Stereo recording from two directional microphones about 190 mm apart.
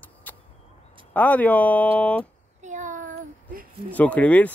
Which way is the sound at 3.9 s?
10° left (ahead or behind).